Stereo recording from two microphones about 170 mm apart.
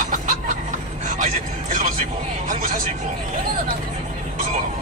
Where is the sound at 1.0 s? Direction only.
50° right (ahead or behind).